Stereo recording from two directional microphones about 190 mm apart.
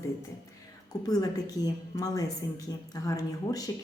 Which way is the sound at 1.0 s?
20° left (ahead or behind).